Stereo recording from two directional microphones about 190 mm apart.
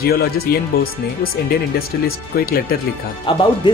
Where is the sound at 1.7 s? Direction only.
50° left (ahead or behind).